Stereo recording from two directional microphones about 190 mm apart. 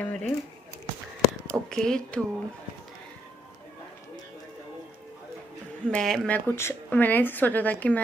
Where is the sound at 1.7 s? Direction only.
5° left (ahead or behind).